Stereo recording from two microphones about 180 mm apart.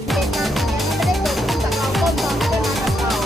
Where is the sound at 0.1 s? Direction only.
Centre (ahead or behind).